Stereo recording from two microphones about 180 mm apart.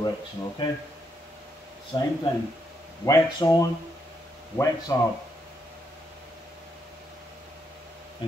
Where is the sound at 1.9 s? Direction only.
20° left (ahead or behind).